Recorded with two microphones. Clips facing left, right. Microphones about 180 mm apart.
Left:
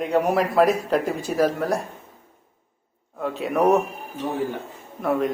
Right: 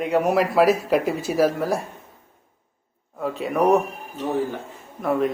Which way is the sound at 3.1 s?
Centre (ahead or behind).